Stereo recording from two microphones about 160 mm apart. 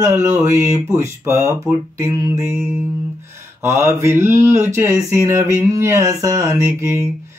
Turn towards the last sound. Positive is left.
turn(degrees=-15)  # may be behind; listen again after turning